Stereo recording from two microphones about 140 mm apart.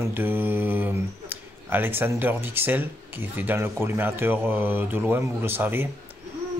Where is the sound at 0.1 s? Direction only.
15° right (ahead or behind).